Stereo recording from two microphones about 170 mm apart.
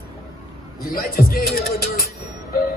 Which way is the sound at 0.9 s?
60° left (ahead or behind).